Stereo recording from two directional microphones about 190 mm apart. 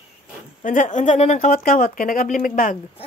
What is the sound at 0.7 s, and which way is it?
Speech, 40° left (ahead or behind).